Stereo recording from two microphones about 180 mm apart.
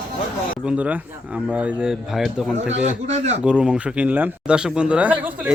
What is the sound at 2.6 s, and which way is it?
Speech, 40° right (ahead or behind).